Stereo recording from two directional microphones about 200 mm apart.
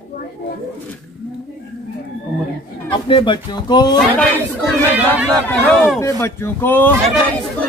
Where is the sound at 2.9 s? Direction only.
25° left (ahead or behind).